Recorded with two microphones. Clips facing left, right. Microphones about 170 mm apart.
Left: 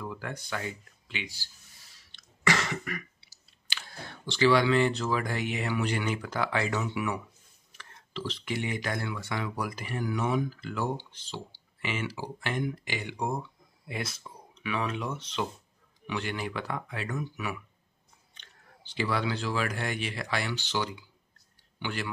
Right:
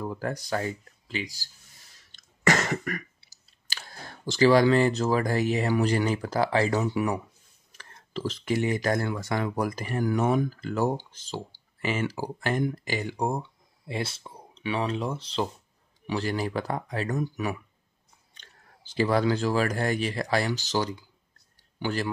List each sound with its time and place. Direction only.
0.0 s speech: 40° right (ahead or behind)
2.0 s cough: 45° right (ahead or behind)
7.7 s speech: 40° right (ahead or behind)